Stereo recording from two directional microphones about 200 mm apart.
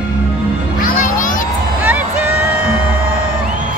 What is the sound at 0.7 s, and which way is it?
Music, 40° left (ahead or behind).